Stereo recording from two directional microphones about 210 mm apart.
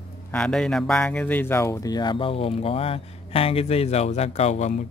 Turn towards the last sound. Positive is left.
turn(degrees=35)  # may be behind; listen again after turning